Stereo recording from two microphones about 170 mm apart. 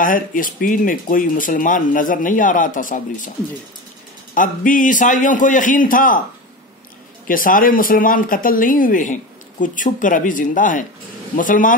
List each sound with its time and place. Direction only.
0.0 s speech: 55° left (ahead or behind)
4.4 s speech: 50° left (ahead or behind)
7.2 s speech: 55° left (ahead or behind)